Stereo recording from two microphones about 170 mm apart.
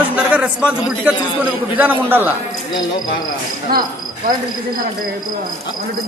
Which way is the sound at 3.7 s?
60° right (ahead or behind).